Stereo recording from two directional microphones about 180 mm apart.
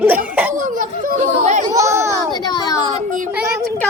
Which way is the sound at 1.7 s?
15° right (ahead or behind).